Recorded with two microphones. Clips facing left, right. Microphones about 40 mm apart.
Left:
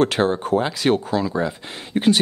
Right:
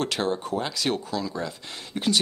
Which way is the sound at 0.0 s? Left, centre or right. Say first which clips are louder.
Left 8 dB; left.